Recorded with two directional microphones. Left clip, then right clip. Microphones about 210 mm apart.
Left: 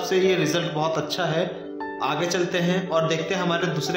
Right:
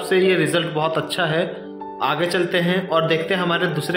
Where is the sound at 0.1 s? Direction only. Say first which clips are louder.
Right 4 dB; 15° right (ahead or behind).